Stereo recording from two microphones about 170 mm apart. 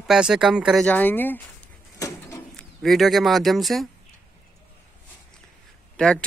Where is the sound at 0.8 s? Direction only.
10° left (ahead or behind).